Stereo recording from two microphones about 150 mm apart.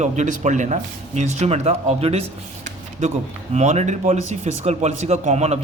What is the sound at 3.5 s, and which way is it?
Speech, 50° right (ahead or behind).